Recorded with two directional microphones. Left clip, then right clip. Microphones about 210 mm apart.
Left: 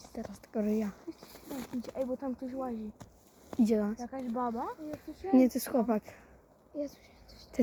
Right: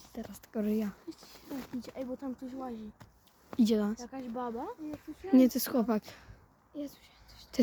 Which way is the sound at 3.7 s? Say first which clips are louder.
Left 1 dB; 25° right (ahead or behind).